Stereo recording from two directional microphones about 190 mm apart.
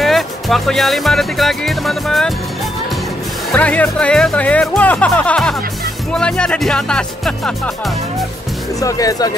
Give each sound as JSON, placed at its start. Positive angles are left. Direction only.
{"t": 0.0, "sound": "speech", "side_deg": 0}
{"t": 3.5, "sound": "speech", "side_deg": 5}
{"t": 8.7, "sound": "speech", "side_deg": 20}